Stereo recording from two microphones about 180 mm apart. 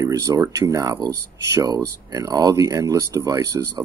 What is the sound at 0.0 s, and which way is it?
Speech, 20° right (ahead or behind).